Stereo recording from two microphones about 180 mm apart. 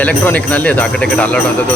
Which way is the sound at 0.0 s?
10° left (ahead or behind).